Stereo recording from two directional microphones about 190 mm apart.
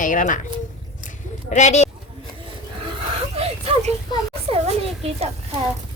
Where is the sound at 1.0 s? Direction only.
40° left (ahead or behind).